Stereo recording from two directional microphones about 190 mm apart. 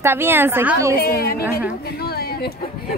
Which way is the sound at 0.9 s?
55° left (ahead or behind).